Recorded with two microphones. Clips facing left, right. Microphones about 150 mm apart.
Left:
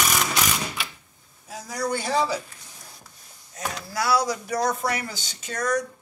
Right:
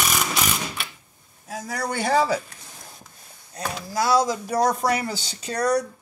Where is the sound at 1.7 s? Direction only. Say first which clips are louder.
Right 2 dB; 60° right (ahead or behind).